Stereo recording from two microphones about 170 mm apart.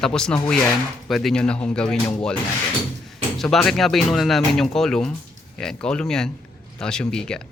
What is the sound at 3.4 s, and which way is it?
Speech, centre (ahead or behind).